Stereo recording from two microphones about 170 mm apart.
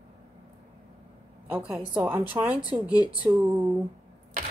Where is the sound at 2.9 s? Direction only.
25° left (ahead or behind).